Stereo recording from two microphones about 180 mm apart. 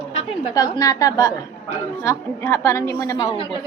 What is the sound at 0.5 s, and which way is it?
A woman's voice, 20° left (ahead or behind).